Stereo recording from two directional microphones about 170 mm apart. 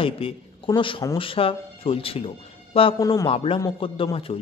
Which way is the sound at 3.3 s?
35° left (ahead or behind).